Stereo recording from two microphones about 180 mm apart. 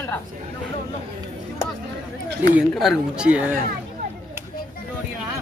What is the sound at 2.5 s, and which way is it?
Speech, 5° right (ahead or behind).